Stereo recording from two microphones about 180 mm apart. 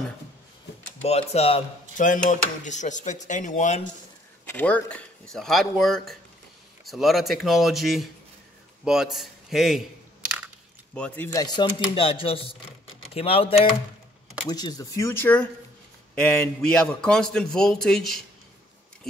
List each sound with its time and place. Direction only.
1.0 s speech: 35° left (ahead or behind)
4.5 s a man's voice: 10° left (ahead or behind)
11.3 s a man's voice: 25° left (ahead or behind); by 18.2 s centre (ahead or behind)